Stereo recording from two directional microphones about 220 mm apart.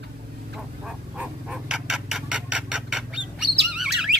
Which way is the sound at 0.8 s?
5° right (ahead or behind).